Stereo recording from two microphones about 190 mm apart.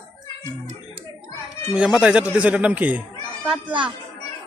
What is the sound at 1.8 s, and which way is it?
A man's voice, 5° right (ahead or behind).